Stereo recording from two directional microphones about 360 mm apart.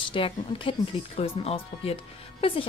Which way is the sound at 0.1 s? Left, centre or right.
Centre.